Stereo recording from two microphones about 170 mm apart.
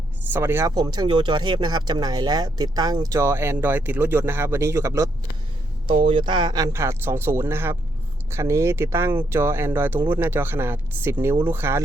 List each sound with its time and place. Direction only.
0.3 s speech: 15° right (ahead or behind)
5.9 s speech: 35° right (ahead or behind); by 11.8 s 15° right (ahead or behind)